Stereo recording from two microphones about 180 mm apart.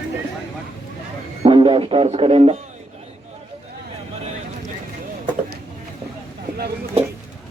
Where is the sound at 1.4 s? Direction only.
30° right (ahead or behind).